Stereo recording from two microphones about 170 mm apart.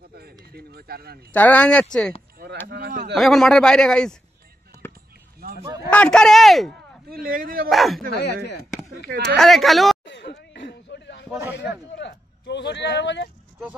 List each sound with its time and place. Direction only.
0.5 s speech: 65° right (ahead or behind)
1.3 s speech: 10° left (ahead or behind)
3.2 s a man's voice: centre (ahead or behind)
4.7 s a sound: 15° left (ahead or behind)
5.4 s a sound: 60° right (ahead or behind)
5.9 s a man's voice: 5° left (ahead or behind)
7.1 s speech: 55° right (ahead or behind)
7.7 s a man's voice: centre (ahead or behind)
8.2 s speech: 75° left (ahead or behind)
9.4 s a man's voice: centre (ahead or behind)
10.0 s a sound: 80° left
12.0 s speech: 90° left